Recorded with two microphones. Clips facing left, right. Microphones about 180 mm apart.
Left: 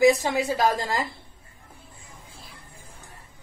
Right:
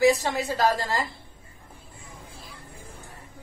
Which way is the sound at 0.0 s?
15° left (ahead or behind).